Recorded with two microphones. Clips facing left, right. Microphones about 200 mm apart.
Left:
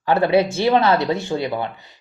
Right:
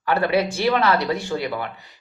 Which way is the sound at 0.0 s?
25° left (ahead or behind).